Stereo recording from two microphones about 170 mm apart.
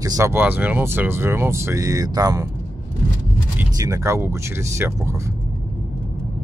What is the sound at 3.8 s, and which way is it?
Speech, 20° right (ahead or behind).